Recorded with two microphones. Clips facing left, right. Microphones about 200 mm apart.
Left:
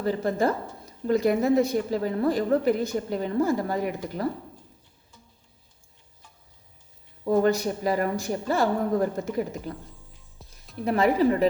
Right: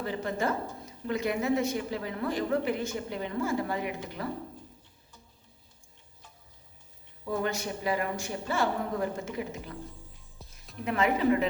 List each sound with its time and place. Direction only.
0.0 s a woman's voice: 40° left (ahead or behind)
7.3 s a woman's voice: 40° left (ahead or behind)
10.4 s music: centre (ahead or behind)
10.8 s a woman's voice: 35° left (ahead or behind)